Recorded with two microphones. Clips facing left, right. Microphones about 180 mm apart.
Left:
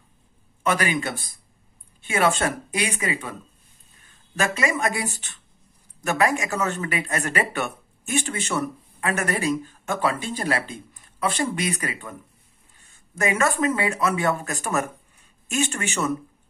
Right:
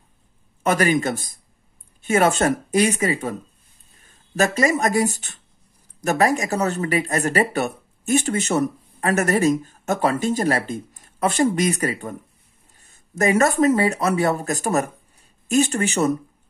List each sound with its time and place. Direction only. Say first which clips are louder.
0.7 s speech: right 5 dB; 45° right (ahead or behind)